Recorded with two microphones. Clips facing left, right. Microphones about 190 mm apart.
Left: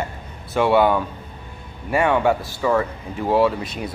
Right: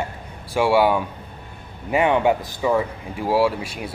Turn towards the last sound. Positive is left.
turn(degrees=-10)  # may be behind; listen again after turning